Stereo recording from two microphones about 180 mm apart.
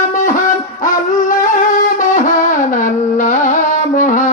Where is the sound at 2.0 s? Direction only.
45° left (ahead or behind).